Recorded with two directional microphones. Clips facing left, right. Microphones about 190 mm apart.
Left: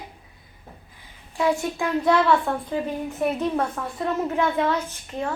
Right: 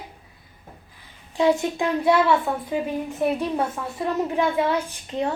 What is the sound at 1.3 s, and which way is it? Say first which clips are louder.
Speech: right 3 dB; 20° right (ahead or behind).